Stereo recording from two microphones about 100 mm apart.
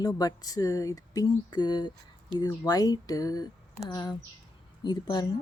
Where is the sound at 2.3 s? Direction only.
55° right (ahead or behind).